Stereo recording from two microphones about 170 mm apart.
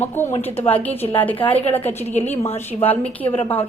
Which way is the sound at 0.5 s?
35° left (ahead or behind).